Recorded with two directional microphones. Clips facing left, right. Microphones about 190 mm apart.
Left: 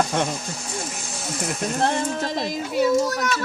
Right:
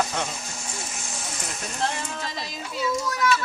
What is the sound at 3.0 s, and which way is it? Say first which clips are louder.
Speech: even; 40° left (ahead or behind).